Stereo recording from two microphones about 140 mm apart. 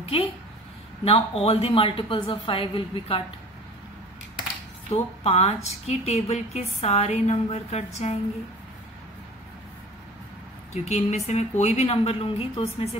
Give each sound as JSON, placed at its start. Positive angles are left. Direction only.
{"t": 1.0, "sound": "a woman's voice", "side_deg": 45}
{"t": 4.9, "sound": "a woman's voice", "side_deg": 50}
{"t": 10.7, "sound": "a woman's voice", "side_deg": 55}